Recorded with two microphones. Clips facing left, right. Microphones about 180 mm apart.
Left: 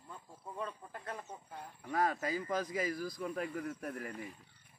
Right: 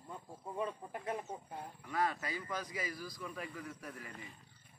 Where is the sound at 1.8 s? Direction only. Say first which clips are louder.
Left 3 dB; 45° left (ahead or behind).